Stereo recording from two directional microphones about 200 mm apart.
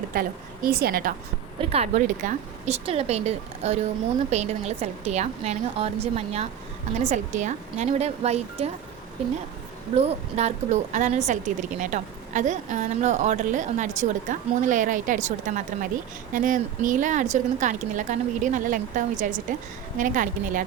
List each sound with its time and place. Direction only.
0.1 s a woman's voice: 45° right (ahead or behind)
1.7 s a woman's voice: 35° right (ahead or behind)
9.9 s a woman's voice: 30° right (ahead or behind)